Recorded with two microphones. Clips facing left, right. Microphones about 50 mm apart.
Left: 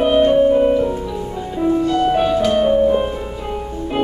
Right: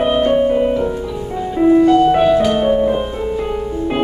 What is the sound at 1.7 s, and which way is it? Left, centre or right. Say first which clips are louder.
Music: right 6 dB; right.